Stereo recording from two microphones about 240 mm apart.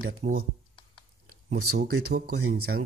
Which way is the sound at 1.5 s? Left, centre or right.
Right.